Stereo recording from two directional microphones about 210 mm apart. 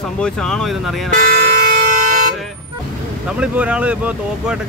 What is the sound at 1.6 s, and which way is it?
Siren, 45° right (ahead or behind).